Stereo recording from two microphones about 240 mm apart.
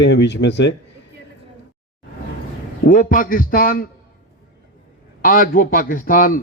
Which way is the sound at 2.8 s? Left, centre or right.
Left.